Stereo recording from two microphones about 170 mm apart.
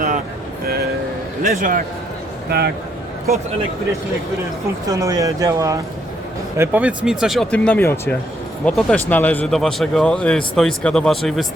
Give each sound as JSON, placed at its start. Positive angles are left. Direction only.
{"t": 1.4, "sound": "a man's voice", "side_deg": -50}
{"t": 2.5, "sound": "speech", "side_deg": -70}
{"t": 4.9, "sound": "speech", "side_deg": -20}
{"t": 6.6, "sound": "speech", "side_deg": -10}